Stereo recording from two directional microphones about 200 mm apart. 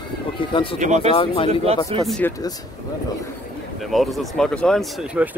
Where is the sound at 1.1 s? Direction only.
30° left (ahead or behind).